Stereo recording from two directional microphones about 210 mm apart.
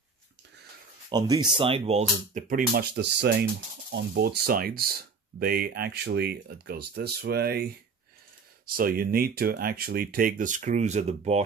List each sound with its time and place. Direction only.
1.1 s speech: 20° right (ahead or behind); by 7.6 s 50° right (ahead or behind)
8.6 s speech: 45° right (ahead or behind)